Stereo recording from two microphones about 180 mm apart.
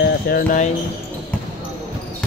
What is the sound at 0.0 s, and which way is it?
Music, 60° left (ahead or behind).